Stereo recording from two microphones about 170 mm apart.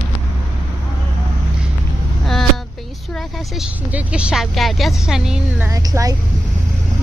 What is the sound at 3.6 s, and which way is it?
A woman's voice, 10° right (ahead or behind).